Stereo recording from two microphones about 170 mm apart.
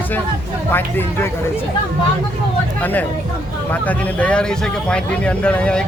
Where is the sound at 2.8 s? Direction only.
10° left (ahead or behind).